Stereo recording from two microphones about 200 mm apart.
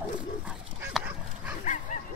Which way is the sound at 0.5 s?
5° right (ahead or behind).